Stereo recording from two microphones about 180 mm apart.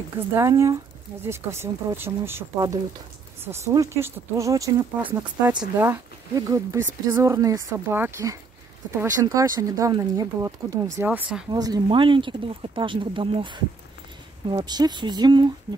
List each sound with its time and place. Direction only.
0.3 s speech: 15° right (ahead or behind)
11.1 s speech: 10° right (ahead or behind)
11.5 s speech: 20° right (ahead or behind)